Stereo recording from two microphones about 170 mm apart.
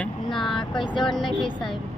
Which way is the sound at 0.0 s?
Centre (ahead or behind).